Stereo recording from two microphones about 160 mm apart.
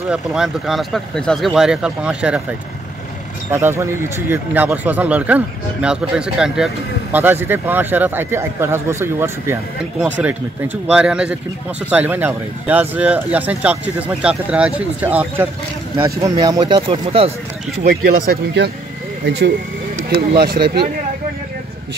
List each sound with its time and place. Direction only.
0.1 s speech: 5° right (ahead or behind)
3.5 s speech: 15° right (ahead or behind)
16.2 s speech: 25° right (ahead or behind)
17.8 s speech: 70° right (ahead or behind)
20.2 s speech: 85° right